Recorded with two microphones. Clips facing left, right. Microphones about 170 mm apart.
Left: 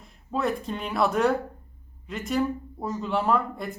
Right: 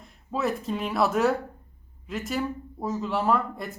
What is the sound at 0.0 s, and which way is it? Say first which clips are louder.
Speech: left 1 dB; centre (ahead or behind).